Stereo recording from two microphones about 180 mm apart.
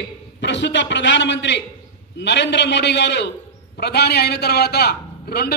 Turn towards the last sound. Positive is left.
turn(degrees=60)  # may be behind; listen again after turning